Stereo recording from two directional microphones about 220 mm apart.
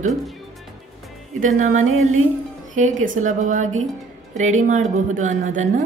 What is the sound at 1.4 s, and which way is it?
Speech, 35° right (ahead or behind).